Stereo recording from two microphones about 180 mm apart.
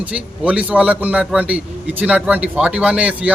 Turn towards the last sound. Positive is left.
turn(degrees=-5)  # may be behind; listen again after turning